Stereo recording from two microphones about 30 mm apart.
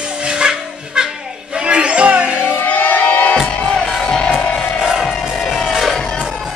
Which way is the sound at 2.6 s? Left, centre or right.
Left.